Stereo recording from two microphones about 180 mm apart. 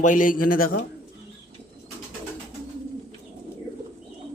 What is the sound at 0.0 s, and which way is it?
Speech, 45° left (ahead or behind).